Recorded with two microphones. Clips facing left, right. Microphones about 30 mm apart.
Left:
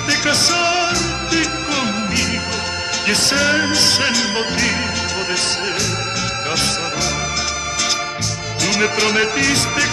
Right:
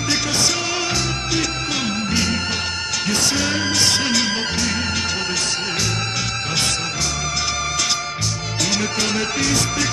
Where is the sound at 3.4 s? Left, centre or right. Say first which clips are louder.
Left 5 dB; centre.